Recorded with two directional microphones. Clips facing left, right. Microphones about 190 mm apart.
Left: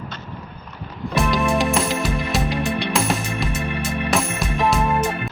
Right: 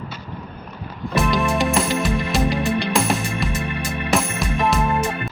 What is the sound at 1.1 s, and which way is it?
Music, centre (ahead or behind).